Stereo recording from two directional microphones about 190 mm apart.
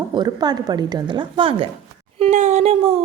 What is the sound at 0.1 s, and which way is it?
Speech, 20° right (ahead or behind).